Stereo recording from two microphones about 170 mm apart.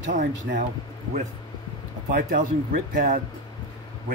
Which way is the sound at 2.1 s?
55° right (ahead or behind).